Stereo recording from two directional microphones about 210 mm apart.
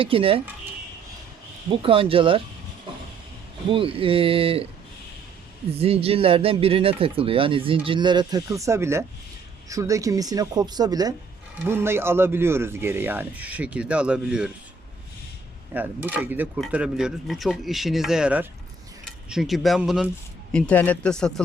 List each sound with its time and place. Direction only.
0.0 s speech: 25° right (ahead or behind)
1.8 s speech: 25° right (ahead or behind)
3.7 s speech: 25° right (ahead or behind)
5.7 s speech: 30° right (ahead or behind); by 14.5 s 5° right (ahead or behind)
15.7 s speech: 10° right (ahead or behind)